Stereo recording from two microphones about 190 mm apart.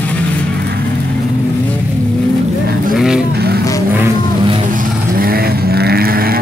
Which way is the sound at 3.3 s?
55° right (ahead or behind).